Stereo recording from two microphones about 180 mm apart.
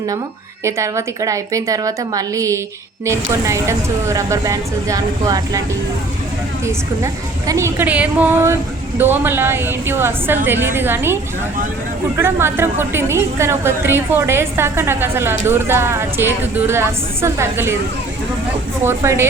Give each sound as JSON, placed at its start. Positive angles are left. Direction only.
{"t": 0.6, "sound": "a woman's voice", "side_deg": -15}
{"t": 6.7, "sound": "a woman's voice", "side_deg": -15}
{"t": 18.9, "sound": "a woman's voice", "side_deg": -15}